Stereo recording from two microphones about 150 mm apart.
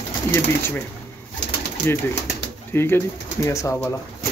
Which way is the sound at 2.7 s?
15° left (ahead or behind).